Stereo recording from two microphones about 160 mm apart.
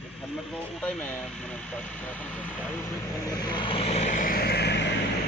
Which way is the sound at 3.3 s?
25° left (ahead or behind).